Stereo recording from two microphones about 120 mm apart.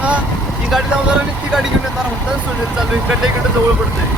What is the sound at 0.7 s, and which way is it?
Speech, centre (ahead or behind).